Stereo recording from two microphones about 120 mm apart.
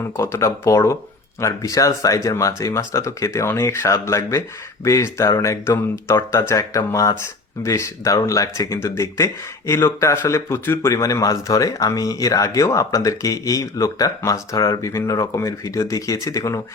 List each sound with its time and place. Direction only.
0.0 s speech: 25° left (ahead or behind)